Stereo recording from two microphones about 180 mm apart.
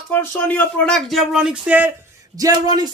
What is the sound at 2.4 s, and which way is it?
Speech, 20° right (ahead or behind).